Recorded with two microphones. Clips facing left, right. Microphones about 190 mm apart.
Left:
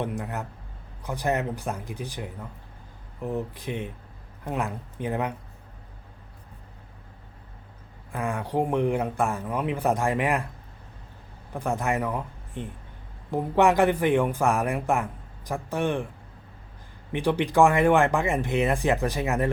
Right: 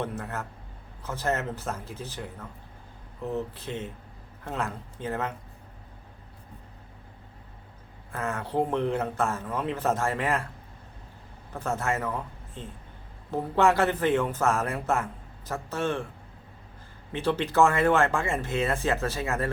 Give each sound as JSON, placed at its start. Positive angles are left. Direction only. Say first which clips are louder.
{"t": 0.0, "sound": "a man's voice", "louder": "left 2 dB", "side_deg": 15}
{"t": 8.1, "sound": "a man's voice", "louder": "left 2 dB", "side_deg": 15}
{"t": 11.5, "sound": "a man's voice", "louder": "left 2 dB", "side_deg": 15}
{"t": 17.1, "sound": "a man's voice", "louder": "left 3 dB", "side_deg": 15}